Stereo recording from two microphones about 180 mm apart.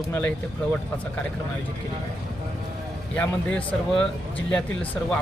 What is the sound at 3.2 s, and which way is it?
Speech, 5° left (ahead or behind).